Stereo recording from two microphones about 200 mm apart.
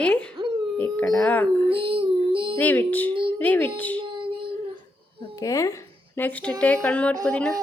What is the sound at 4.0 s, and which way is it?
Child singing, 25° right (ahead or behind).